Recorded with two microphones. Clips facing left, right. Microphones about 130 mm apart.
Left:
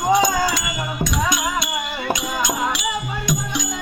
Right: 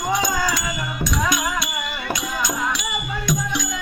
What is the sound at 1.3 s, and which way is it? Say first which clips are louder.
Music: left 1 dB; 25° left (ahead or behind).